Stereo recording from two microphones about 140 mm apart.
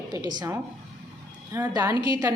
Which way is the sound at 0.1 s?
30° right (ahead or behind).